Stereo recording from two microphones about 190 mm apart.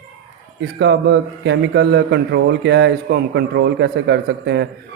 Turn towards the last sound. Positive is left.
turn(degrees=-65)  # may be behind; listen again after turning